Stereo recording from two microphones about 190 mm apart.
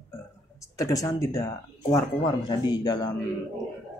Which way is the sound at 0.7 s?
15° left (ahead or behind).